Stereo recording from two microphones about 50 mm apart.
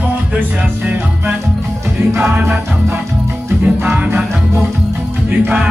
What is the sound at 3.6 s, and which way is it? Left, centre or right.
Music, right.